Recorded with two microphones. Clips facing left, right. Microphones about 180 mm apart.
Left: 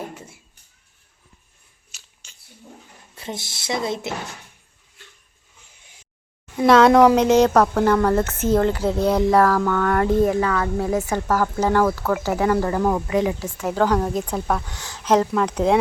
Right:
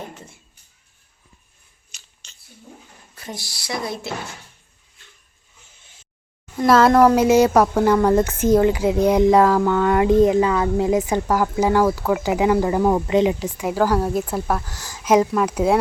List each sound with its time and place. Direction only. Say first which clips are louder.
0.1 s a sound: left 1 dB; 10° left (ahead or behind)
1.9 s chewing: right 1 dB; 5° left (ahead or behind)
3.2 s a woman's voice: left 2 dB; 25° left (ahead or behind)
6.6 s a woman's voice: left 1 dB; centre (ahead or behind)